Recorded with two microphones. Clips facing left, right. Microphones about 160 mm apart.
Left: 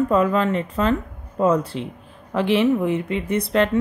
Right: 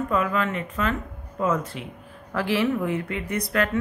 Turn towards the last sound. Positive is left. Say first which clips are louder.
# left 5 dB
turn(degrees=30)  # may be behind; listen again after turning